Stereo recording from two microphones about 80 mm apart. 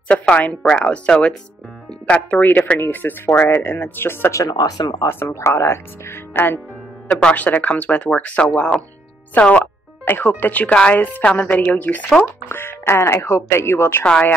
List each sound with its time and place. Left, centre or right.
0.1 s speech: centre
4.3 s speech: left
4.6 s speech: left
5.0 s speech: left
7.1 s speech: centre
12.4 s speech: left